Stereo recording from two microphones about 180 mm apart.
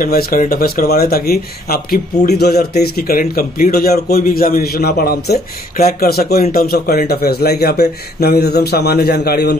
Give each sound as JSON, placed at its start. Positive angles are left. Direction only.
{"t": 0.0, "sound": "speech", "side_deg": 55}